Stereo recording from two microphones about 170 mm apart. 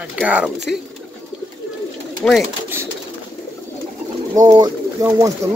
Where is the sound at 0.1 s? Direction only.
5° right (ahead or behind).